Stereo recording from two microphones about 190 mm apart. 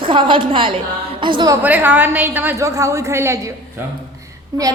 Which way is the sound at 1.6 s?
10° right (ahead or behind).